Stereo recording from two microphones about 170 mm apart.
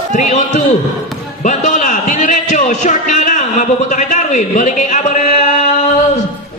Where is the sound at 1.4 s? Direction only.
45° left (ahead or behind).